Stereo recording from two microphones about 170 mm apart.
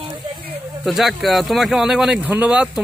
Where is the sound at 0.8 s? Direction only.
Centre (ahead or behind).